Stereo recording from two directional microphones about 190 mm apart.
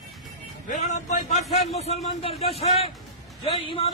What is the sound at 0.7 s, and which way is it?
A man's voice, 40° left (ahead or behind).